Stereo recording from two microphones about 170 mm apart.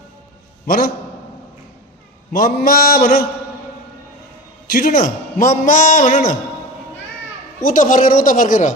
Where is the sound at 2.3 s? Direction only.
60° left (ahead or behind).